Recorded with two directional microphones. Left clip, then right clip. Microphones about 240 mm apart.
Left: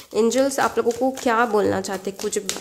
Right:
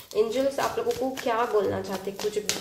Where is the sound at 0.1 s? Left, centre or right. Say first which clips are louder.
Left 5 dB; left.